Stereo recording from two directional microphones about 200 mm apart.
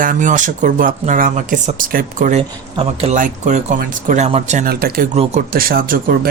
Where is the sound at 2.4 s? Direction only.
30° right (ahead or behind).